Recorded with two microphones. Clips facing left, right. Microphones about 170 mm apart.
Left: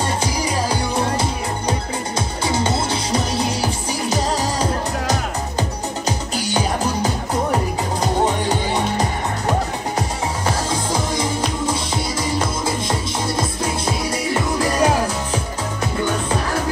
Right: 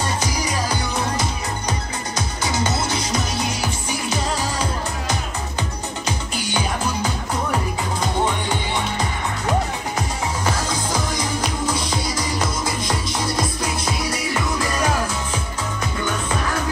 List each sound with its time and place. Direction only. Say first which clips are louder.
0.2 s music: left 3 dB; 30° left (ahead or behind)
10.7 s music: left 2 dB; 25° left (ahead or behind)
16.0 s music: left 3 dB; 30° left (ahead or behind)